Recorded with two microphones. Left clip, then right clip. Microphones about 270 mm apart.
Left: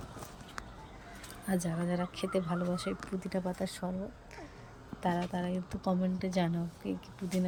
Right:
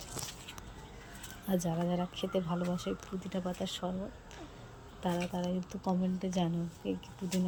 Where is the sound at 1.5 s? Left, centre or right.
Centre.